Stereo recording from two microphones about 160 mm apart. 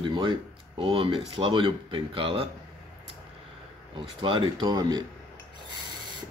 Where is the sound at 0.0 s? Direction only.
30° right (ahead or behind).